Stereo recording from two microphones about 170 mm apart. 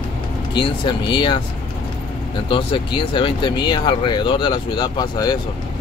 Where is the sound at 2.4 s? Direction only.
30° left (ahead or behind).